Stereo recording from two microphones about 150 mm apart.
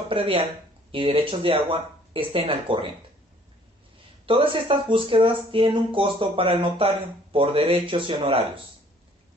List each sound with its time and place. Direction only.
0.1 s speech: 35° right (ahead or behind)
4.3 s speech: 35° right (ahead or behind)